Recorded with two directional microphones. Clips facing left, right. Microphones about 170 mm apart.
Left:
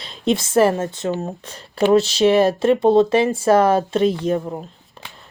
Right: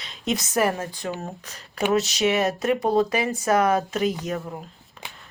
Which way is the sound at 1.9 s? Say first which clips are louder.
Left 7 dB; 30° left (ahead or behind).